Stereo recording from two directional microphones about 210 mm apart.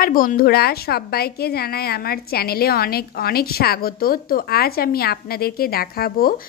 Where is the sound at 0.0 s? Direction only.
40° left (ahead or behind).